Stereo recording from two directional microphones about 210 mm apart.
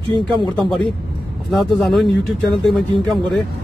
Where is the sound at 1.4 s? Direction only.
Centre (ahead or behind).